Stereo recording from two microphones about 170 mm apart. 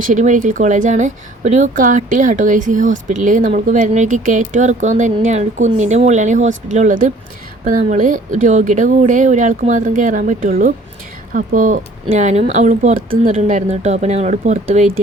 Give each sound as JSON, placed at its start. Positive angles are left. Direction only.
{"t": 0.1, "sound": "a woman's voice", "side_deg": -50}
{"t": 13.3, "sound": "speech", "side_deg": -40}